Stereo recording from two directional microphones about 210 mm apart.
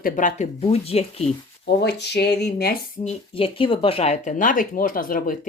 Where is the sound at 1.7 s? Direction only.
50° left (ahead or behind).